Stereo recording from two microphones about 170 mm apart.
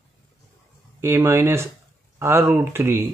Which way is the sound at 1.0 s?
15° right (ahead or behind).